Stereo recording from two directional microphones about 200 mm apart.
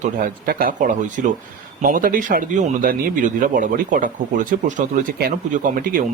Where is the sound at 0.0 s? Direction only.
45° right (ahead or behind).